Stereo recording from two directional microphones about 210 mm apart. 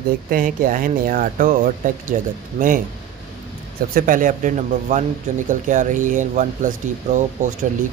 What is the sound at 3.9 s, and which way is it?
Speech, 40° right (ahead or behind).